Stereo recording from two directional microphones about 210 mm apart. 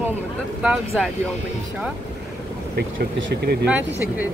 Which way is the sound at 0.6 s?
5° right (ahead or behind).